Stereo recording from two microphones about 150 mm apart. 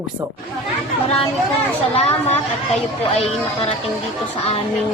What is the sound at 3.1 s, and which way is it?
Speech, 40° left (ahead or behind).